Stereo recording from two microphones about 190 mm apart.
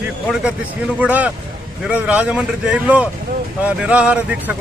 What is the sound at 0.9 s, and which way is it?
Speech, 5° right (ahead or behind).